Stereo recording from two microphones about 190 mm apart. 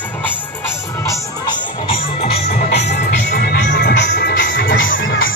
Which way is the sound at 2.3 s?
60° left (ahead or behind).